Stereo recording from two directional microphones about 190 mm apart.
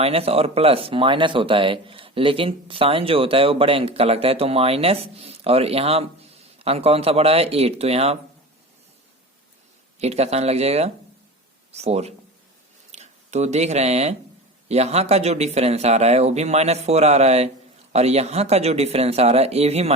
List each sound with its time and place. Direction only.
0.0 s speech: 30° right (ahead or behind)
10.0 s speech: 35° right (ahead or behind)